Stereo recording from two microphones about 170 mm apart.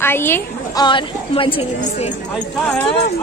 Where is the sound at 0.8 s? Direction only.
30° left (ahead or behind).